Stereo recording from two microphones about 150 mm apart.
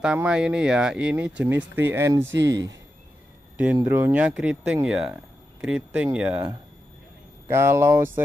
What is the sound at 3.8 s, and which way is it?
Speech, 15° right (ahead or behind).